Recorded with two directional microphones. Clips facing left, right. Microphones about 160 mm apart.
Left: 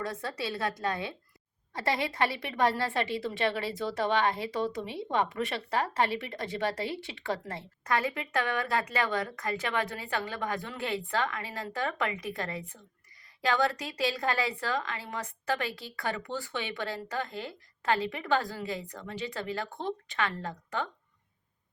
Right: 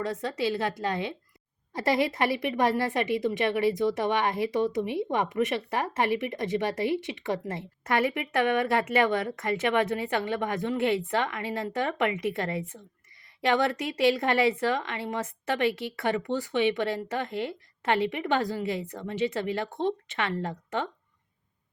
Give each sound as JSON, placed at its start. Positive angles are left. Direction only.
{"t": 0.0, "sound": "a woman's voice", "side_deg": -25}